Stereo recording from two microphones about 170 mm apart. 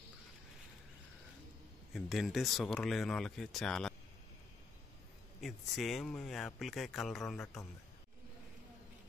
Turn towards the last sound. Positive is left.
turn(degrees=0)  # may be behind; listen again after turning